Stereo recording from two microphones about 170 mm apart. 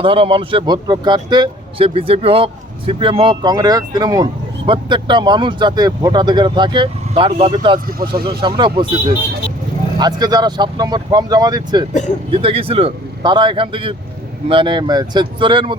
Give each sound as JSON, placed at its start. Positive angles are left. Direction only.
{"t": 0.0, "sound": "speech", "side_deg": -30}